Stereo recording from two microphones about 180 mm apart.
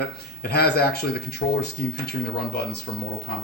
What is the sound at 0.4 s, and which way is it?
Speech, 60° left (ahead or behind).